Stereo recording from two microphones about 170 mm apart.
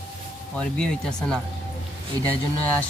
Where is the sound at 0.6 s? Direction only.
5° left (ahead or behind).